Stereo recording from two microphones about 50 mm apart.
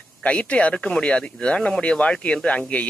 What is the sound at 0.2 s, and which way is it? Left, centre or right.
Speech, left.